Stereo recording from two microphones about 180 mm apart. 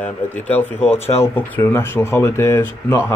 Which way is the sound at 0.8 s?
35° left (ahead or behind).